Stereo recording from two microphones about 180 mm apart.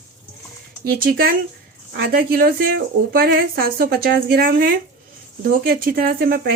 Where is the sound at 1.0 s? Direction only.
55° right (ahead or behind).